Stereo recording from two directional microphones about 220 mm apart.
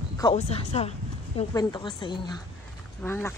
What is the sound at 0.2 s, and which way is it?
A woman's voice, 25° left (ahead or behind).